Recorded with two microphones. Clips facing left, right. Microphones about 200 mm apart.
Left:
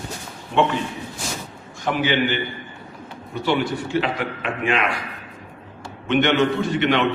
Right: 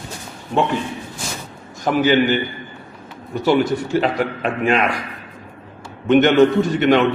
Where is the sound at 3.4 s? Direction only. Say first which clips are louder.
Right 5 dB; 40° right (ahead or behind).